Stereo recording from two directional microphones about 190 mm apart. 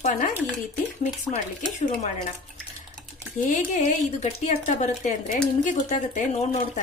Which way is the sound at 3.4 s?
40° left (ahead or behind).